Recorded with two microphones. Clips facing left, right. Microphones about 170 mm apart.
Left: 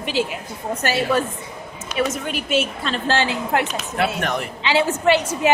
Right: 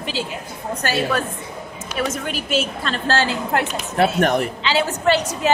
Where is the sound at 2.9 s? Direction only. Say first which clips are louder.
Right 1 dB; 15° left (ahead or behind).